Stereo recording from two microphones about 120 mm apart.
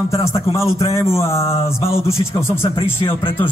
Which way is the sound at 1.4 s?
55° left (ahead or behind).